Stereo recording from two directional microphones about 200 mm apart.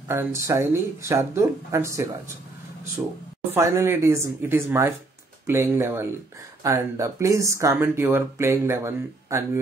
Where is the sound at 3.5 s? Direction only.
15° right (ahead or behind).